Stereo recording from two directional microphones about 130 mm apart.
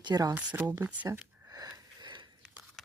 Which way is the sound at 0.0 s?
30° right (ahead or behind).